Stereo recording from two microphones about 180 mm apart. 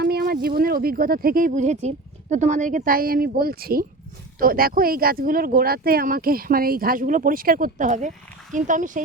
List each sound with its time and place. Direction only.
0.0 s a woman's voice: 60° right (ahead or behind)